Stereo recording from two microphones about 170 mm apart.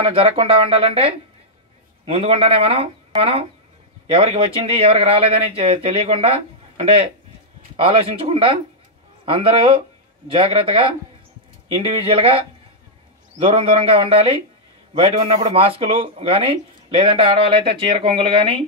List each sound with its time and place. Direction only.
0.0 s speech: 35° right (ahead or behind)
11.7 s speech: 35° right (ahead or behind)